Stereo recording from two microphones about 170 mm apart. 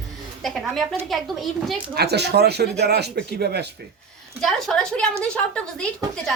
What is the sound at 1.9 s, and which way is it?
Speech, 70° right (ahead or behind).